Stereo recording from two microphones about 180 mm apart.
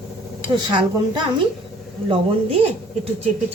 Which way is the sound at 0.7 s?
25° right (ahead or behind).